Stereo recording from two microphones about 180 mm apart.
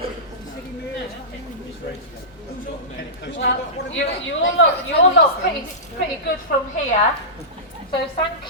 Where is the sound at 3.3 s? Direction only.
85° left.